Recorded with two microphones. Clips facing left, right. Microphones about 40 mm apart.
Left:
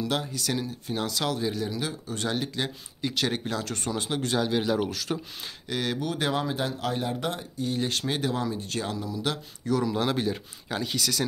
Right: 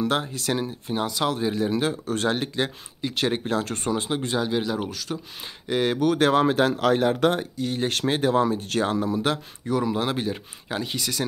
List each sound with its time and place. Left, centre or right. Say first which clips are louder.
0.0 s speech: right 4 dB; right
0.9 s speech: right 4 dB; centre
1.7 s speech: right 8 dB; right
2.3 s speech: right 4 dB; right
3.0 s speech: right 1 dB; centre
3.4 s speech: right 5 dB; right
3.9 s speech: right 3 dB; centre
4.3 s speech: left 1 dB; centre
5.7 s speech: right 7 dB; right
5.9 s speech: right 11 dB; right
8.1 s speech: right 7 dB; right
9.7 s speech: right 2 dB; centre